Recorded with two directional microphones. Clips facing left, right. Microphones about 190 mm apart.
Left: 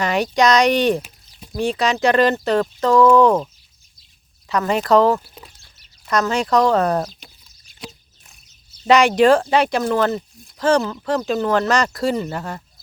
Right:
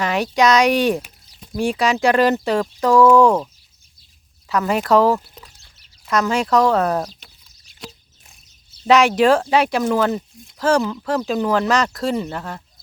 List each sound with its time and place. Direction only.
0.0 s speech: centre (ahead or behind)
4.4 s speech: 5° right (ahead or behind)
8.9 s speech: 5° right (ahead or behind)